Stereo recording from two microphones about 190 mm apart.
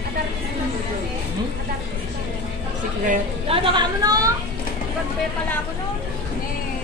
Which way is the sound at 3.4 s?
30° right (ahead or behind).